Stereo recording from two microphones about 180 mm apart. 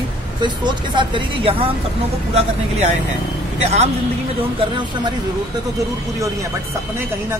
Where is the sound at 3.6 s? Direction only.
35° right (ahead or behind).